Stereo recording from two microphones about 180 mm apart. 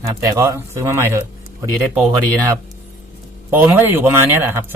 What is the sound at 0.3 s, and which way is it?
Speech, 15° right (ahead or behind).